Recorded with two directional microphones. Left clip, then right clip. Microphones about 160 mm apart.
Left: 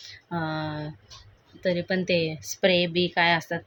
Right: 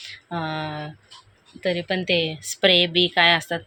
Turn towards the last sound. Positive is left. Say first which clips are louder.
# right 5 dB
turn(degrees=0)  # may be behind; listen again after turning